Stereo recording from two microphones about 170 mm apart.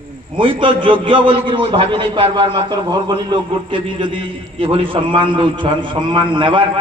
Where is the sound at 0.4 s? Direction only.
30° right (ahead or behind).